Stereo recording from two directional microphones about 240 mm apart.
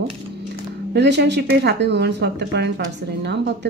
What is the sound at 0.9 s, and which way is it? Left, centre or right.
A woman's voice, right.